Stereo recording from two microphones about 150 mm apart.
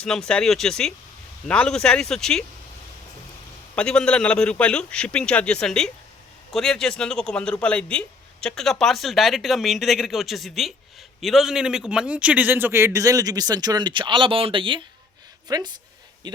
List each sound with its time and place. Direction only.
0.0 s speech: 5° left (ahead or behind)
3.8 s a man's voice: 5° left (ahead or behind); by 16.4 s 30° right (ahead or behind)